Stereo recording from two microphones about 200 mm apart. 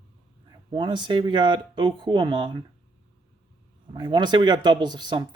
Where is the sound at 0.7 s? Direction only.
25° right (ahead or behind).